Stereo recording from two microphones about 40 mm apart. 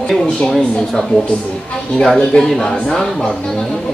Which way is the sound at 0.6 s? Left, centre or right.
Centre.